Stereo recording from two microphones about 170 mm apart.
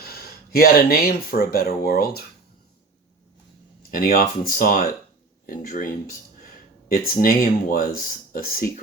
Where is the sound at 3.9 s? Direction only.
55° left (ahead or behind).